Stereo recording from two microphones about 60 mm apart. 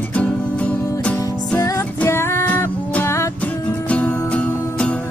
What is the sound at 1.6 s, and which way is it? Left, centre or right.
Music, left.